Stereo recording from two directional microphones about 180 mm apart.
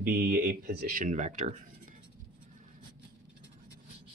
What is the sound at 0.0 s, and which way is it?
Speech, 55° right (ahead or behind).